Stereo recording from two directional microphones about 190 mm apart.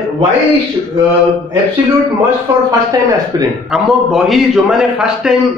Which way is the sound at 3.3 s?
20° right (ahead or behind).